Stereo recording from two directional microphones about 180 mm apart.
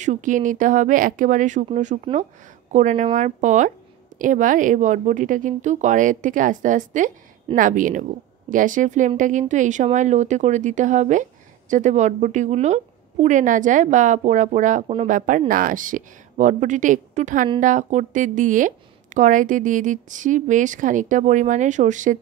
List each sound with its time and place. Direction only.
0.0 s speech: 45° right (ahead or behind)